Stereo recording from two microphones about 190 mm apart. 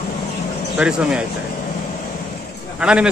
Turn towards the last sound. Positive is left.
turn(degrees=-5)  # may be behind; listen again after turning